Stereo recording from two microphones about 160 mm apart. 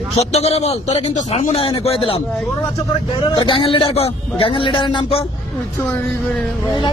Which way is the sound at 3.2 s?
30° left (ahead or behind).